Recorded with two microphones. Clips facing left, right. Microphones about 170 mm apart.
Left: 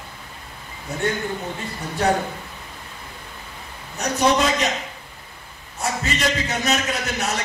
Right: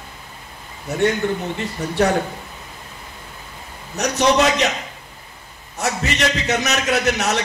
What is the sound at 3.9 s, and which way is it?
Speech, 75° right (ahead or behind).